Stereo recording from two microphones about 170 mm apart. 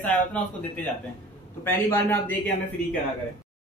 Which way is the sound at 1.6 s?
15° left (ahead or behind).